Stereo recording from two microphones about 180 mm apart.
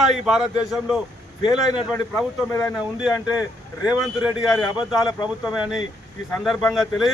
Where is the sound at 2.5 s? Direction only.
15° left (ahead or behind).